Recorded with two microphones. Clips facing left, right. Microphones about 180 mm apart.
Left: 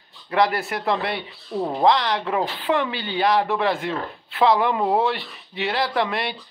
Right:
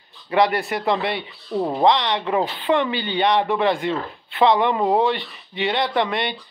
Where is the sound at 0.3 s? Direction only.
Centre (ahead or behind).